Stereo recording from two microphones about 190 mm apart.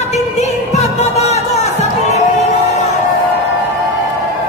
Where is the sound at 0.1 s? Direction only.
35° left (ahead or behind).